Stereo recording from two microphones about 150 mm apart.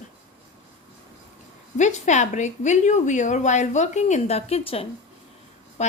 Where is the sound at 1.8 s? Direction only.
50° left (ahead or behind).